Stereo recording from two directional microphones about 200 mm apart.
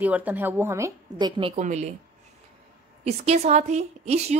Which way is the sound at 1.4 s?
30° right (ahead or behind).